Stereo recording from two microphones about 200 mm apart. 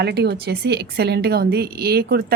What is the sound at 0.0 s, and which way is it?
A woman's voice, 55° right (ahead or behind).